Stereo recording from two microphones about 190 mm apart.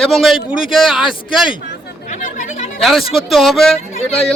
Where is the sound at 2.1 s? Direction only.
40° left (ahead or behind).